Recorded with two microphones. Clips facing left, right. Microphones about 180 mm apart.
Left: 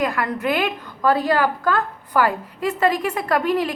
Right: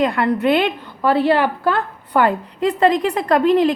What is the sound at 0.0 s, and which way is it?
A woman's voice, 30° right (ahead or behind).